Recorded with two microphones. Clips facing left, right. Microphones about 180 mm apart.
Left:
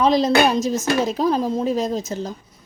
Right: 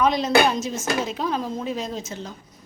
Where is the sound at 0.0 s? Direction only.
35° left (ahead or behind).